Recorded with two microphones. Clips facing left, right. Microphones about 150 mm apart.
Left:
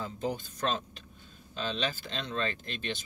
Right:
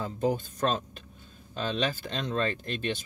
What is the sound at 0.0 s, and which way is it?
Speech, 45° right (ahead or behind).